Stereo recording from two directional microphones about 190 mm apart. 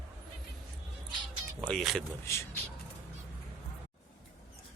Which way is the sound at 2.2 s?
15° left (ahead or behind).